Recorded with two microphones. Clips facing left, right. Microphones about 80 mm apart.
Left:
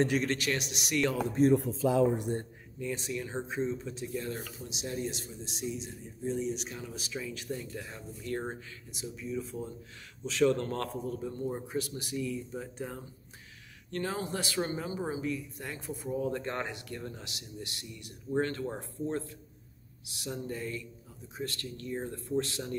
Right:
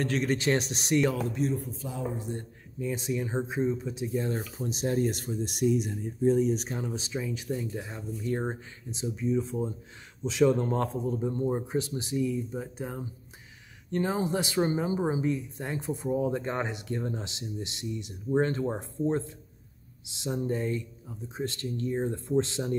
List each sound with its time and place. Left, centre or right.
0.4 s speech: right
1.5 s speech: left
2.8 s speech: centre
4.4 s speech: right